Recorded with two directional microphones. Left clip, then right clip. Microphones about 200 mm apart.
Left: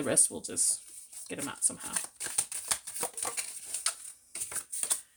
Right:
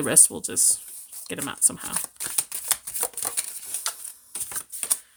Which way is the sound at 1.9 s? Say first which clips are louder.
Right 5 dB; 20° right (ahead or behind).